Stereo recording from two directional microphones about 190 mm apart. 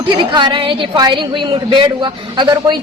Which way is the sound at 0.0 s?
25° right (ahead or behind).